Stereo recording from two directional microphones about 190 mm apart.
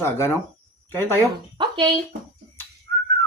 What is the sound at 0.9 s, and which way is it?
Speech, 10° left (ahead or behind).